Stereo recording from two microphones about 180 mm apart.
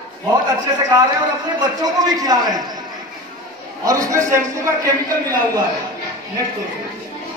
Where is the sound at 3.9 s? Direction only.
20° right (ahead or behind).